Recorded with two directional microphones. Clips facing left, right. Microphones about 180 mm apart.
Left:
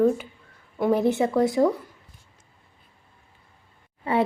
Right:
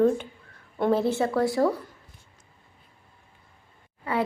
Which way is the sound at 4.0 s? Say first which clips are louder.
Left 4 dB; 25° left (ahead or behind).